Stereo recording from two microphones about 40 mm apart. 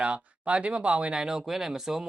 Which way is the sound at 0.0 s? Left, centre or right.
Right.